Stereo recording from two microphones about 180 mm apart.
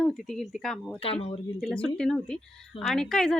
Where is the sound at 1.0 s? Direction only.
30° left (ahead or behind).